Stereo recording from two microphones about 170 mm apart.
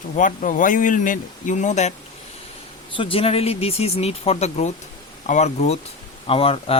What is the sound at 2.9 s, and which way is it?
Speech, 30° left (ahead or behind).